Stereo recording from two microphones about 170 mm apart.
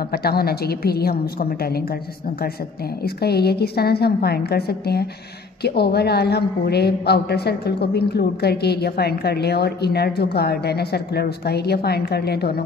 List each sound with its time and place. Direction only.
0.1 s a woman's voice: 65° left (ahead or behind)
3.0 s a woman's voice: 70° left (ahead or behind)